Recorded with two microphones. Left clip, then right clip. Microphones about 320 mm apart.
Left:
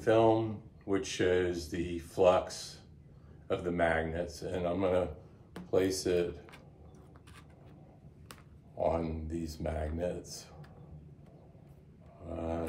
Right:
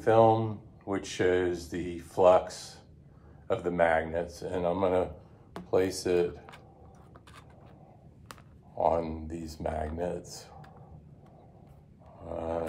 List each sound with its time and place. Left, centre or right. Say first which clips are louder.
0.0 s speech: right 4 dB; centre
8.3 s speech: right 5 dB; centre
12.3 s speech: right 4 dB; centre